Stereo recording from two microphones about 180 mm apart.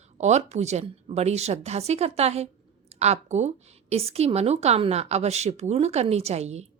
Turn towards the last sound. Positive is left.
turn(degrees=-35)  # may be behind; listen again after turning